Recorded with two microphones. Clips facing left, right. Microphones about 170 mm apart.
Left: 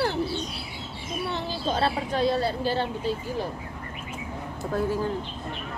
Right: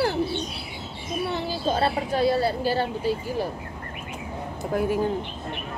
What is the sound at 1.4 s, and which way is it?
A woman's voice, 10° right (ahead or behind).